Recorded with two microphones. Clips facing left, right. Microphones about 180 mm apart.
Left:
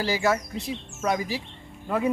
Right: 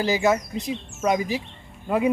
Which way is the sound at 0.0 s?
20° right (ahead or behind).